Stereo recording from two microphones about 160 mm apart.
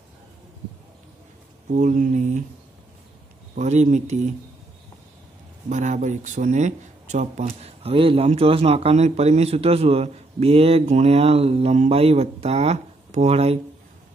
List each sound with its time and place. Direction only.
1.7 s speech: 50° right (ahead or behind)
3.5 s speech: 45° right (ahead or behind)
5.7 s speech: 50° right (ahead or behind)